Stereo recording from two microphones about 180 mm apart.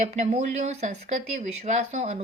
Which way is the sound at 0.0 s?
40° right (ahead or behind).